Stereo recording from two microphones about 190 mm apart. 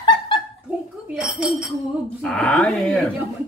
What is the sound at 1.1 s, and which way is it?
A man's voice, 5° right (ahead or behind).